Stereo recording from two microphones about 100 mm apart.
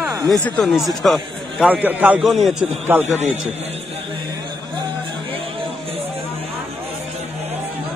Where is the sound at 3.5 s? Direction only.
90° right.